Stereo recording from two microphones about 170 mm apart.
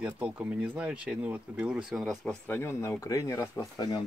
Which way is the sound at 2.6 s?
15° left (ahead or behind).